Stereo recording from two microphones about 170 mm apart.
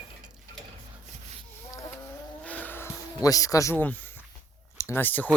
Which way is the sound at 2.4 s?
10° left (ahead or behind).